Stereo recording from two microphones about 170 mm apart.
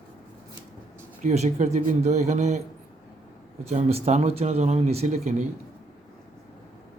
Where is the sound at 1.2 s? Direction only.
45° right (ahead or behind).